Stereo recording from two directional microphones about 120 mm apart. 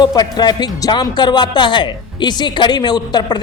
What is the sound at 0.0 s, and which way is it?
Speech, 35° left (ahead or behind).